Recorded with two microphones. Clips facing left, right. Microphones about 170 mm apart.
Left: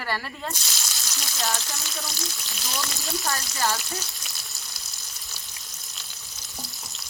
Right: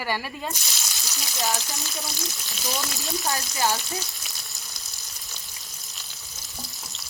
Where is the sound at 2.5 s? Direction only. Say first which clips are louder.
Right 3 dB; centre (ahead or behind).